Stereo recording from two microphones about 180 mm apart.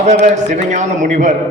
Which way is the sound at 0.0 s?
40° right (ahead or behind).